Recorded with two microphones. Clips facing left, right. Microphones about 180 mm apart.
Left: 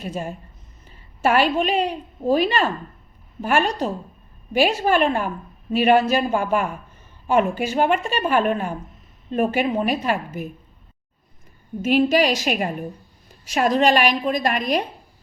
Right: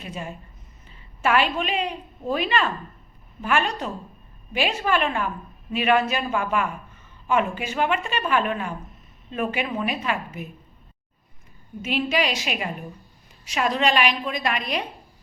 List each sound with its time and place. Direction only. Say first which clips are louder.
0.0 s a woman's voice: left 5 dB; 40° left (ahead or behind)
11.8 s a woman's voice: left 7 dB; 45° left (ahead or behind)